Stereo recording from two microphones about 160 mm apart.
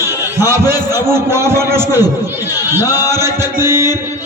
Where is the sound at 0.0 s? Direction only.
15° right (ahead or behind).